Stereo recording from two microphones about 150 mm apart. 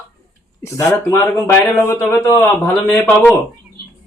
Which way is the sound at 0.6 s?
20° left (ahead or behind).